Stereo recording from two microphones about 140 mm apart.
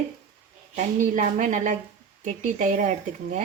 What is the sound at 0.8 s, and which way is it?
Speech, 65° right (ahead or behind).